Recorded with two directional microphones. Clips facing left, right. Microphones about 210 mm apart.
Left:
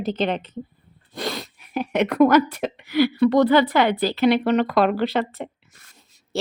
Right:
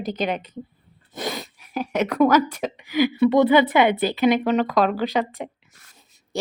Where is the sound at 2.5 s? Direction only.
10° right (ahead or behind).